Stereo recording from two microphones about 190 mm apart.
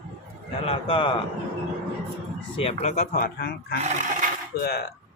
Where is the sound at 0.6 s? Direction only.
30° left (ahead or behind).